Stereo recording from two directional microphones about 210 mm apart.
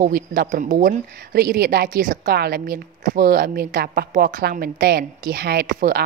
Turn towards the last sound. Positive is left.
turn(degrees=-45)  # may be behind; listen again after turning